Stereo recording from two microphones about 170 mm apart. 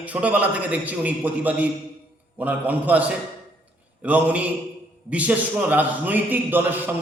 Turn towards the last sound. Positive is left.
turn(degrees=-10)  # may be behind; listen again after turning